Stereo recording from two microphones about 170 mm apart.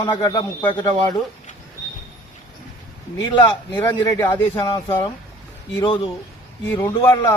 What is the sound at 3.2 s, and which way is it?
Speech, 25° left (ahead or behind).